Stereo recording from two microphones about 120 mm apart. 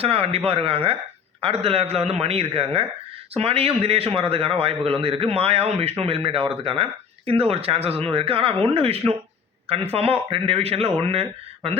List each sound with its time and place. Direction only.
0.0 s a man's voice: 55° right (ahead or behind)